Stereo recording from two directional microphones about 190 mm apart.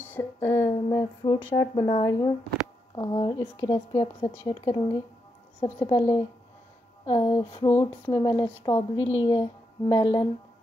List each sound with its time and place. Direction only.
0.0 s speech: 10° left (ahead or behind); by 4.3 s 30° left (ahead or behind)
4.3 s speech: 15° left (ahead or behind)
7.1 s a sound: 15° left (ahead or behind)
7.6 s a woman's voice: 15° left (ahead or behind)